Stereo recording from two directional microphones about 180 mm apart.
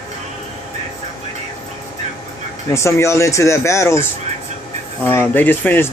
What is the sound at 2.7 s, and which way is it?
Speech, 15° left (ahead or behind).